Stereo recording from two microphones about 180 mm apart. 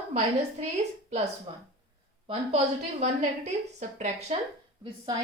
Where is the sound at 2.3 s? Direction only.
35° right (ahead or behind).